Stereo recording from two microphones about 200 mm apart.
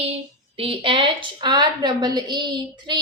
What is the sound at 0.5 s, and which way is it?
A woman's voice, 25° right (ahead or behind).